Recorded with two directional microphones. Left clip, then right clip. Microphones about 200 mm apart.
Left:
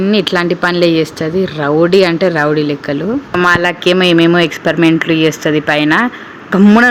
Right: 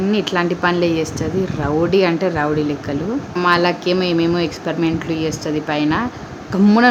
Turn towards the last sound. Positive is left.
turn(degrees=20)  # may be behind; listen again after turning